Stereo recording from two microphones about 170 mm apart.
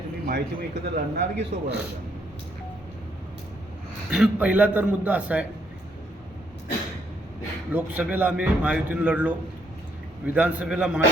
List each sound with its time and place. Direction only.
0.3 s speech: 75° right (ahead or behind)
4.1 s a man's voice: 5° right (ahead or behind)
7.7 s a man's voice: 10° right (ahead or behind)